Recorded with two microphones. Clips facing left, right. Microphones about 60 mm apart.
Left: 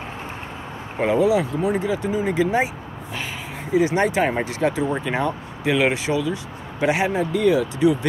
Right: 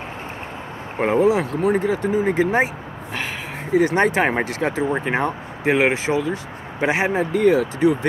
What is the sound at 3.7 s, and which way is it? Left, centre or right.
Speech, right.